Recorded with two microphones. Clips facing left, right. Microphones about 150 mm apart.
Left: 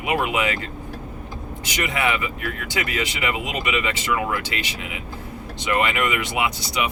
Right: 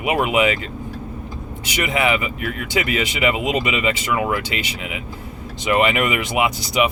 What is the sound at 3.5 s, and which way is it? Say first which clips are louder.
Speech: right 5 dB; 20° right (ahead or behind).